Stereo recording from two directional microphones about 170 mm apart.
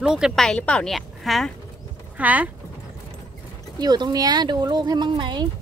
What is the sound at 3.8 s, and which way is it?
Speech, 25° right (ahead or behind).